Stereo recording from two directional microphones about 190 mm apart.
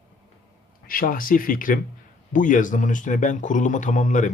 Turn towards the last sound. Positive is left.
turn(degrees=40)  # may be behind; listen again after turning